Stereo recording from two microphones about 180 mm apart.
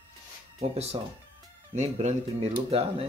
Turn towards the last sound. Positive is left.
turn(degrees=-35)  # may be behind; listen again after turning